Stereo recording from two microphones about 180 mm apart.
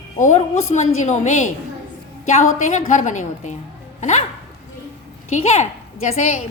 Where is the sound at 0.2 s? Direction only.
40° left (ahead or behind).